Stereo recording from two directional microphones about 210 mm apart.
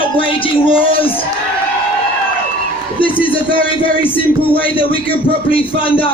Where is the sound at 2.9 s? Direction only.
25° left (ahead or behind).